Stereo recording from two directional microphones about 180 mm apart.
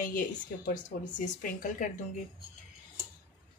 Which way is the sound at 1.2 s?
45° left (ahead or behind).